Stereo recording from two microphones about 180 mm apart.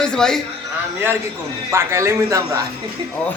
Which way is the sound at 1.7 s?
15° right (ahead or behind).